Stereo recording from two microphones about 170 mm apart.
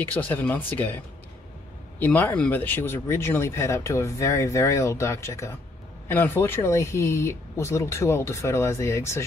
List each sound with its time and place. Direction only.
0.0 s speech: 10° left (ahead or behind)
2.0 s speech: 10° left (ahead or behind)